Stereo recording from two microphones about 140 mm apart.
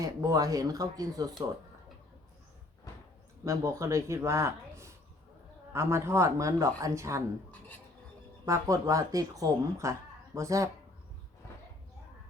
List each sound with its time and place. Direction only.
0.0 s speech: 25° right (ahead or behind)
3.4 s a man's voice: 25° right (ahead or behind)
8.4 s speech: 20° right (ahead or behind)